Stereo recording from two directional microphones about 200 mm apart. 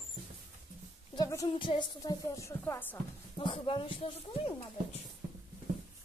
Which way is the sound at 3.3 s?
25° left (ahead or behind).